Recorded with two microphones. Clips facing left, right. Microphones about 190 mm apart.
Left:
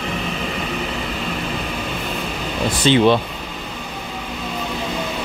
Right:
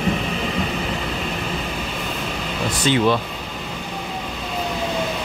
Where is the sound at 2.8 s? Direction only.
25° left (ahead or behind).